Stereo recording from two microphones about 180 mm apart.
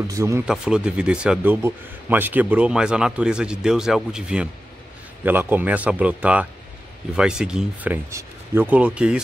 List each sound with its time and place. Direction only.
0.1 s speech: 15° right (ahead or behind)
0.5 s a man's voice: 5° right (ahead or behind)